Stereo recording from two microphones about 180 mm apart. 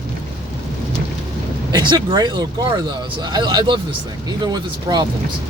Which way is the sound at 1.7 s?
25° right (ahead or behind).